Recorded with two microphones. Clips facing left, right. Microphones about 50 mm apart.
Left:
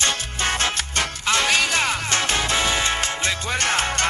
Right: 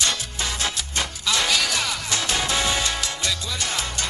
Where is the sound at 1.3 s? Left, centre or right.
Left.